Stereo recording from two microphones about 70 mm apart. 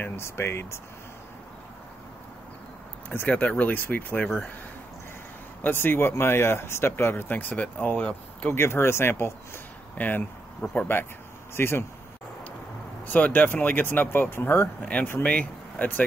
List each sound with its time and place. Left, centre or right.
0.0 s speech: left
3.3 s speech: left
5.6 s speech: left
8.0 s speech: centre
8.5 s speech: left
9.9 s speech: left
10.6 s speech: centre
11.5 s speech: left
13.0 s speech: left
15.2 s speech: left